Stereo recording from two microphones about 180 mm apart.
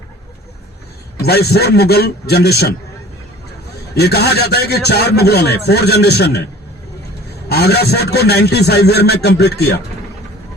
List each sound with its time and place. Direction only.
1.2 s a man's voice: 65° left (ahead or behind)
3.9 s a man's voice: 65° left (ahead or behind)
7.4 s a man's voice: 65° left (ahead or behind)